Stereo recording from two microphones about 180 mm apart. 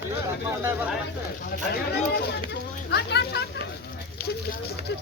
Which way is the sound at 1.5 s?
60° left (ahead or behind).